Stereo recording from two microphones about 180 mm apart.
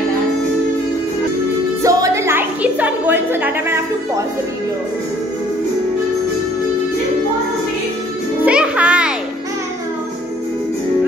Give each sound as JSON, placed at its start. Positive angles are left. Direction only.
{"t": 1.8, "sound": "music", "side_deg": -20}
{"t": 8.5, "sound": "music", "side_deg": -5}